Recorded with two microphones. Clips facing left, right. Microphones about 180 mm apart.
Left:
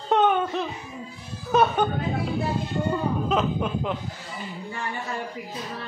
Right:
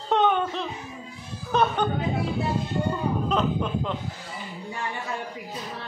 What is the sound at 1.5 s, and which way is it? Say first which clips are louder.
Music: left 3 dB; 5° left (ahead or behind).